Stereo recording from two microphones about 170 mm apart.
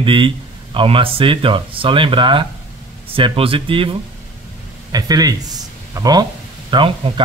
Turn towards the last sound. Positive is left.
turn(degrees=-30)  # may be behind; listen again after turning